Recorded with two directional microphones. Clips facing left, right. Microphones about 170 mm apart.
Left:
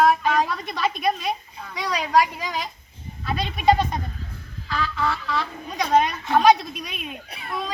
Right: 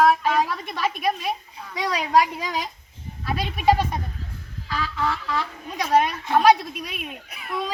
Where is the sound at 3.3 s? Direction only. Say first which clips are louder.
Left 1 dB; 5° right (ahead or behind).